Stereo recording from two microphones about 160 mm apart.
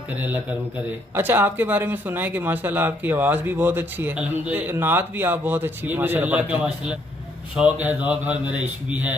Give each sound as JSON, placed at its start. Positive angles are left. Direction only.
{"t": 1.1, "sound": "speech", "side_deg": -10}